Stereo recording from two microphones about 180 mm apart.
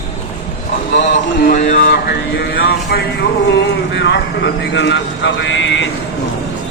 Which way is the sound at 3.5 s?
75° left (ahead or behind).